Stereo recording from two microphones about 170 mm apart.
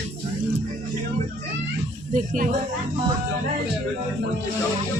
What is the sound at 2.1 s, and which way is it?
Speech, 55° right (ahead or behind).